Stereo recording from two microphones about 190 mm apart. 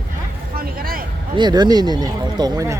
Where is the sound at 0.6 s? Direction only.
50° right (ahead or behind).